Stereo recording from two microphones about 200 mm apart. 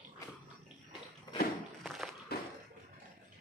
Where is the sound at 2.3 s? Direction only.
50° left (ahead or behind).